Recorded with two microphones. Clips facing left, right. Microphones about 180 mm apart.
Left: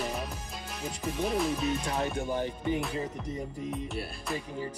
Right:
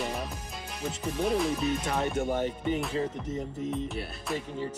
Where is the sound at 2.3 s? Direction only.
25° right (ahead or behind).